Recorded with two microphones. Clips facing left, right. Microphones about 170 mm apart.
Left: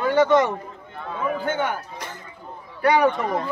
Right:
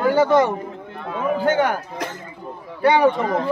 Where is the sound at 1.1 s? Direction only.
90° right.